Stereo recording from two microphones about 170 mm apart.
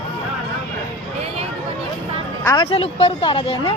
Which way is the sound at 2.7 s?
35° left (ahead or behind).